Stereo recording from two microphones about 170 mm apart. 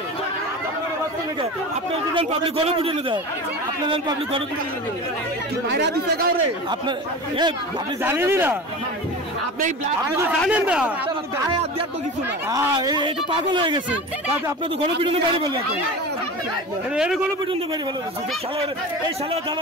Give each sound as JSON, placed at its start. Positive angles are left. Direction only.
{"t": 2.1, "sound": "a man's voice", "side_deg": -30}
{"t": 5.7, "sound": "speech", "side_deg": -85}
{"t": 8.0, "sound": "speech", "side_deg": -15}
{"t": 10.5, "sound": "speech", "side_deg": -5}
{"t": 12.4, "sound": "speech", "side_deg": -20}
{"t": 15.0, "sound": "a man's voice", "side_deg": -30}
{"t": 16.9, "sound": "a man's voice", "side_deg": -5}